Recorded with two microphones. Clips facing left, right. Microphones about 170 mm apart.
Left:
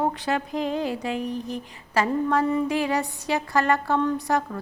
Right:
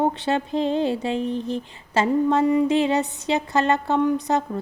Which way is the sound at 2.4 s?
15° right (ahead or behind).